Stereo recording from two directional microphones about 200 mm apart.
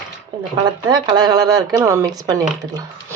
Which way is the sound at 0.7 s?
20° right (ahead or behind).